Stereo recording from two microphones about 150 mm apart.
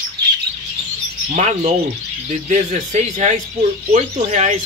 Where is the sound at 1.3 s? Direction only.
50° right (ahead or behind).